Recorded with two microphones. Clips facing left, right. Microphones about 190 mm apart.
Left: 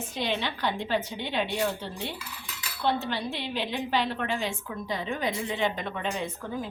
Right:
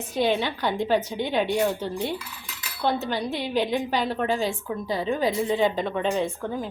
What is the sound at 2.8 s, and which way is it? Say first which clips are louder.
A woman's voice: right 3 dB; 40° right (ahead or behind).